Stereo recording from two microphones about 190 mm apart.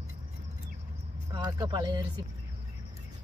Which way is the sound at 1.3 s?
20° right (ahead or behind).